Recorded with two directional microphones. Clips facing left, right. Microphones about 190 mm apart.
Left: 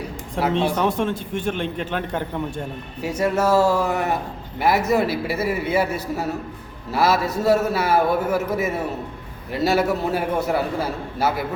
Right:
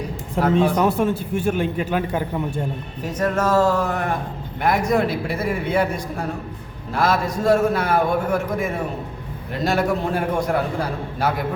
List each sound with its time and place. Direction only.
0.5 s a man's voice: 5° right (ahead or behind)
3.0 s a man's voice: 10° left (ahead or behind)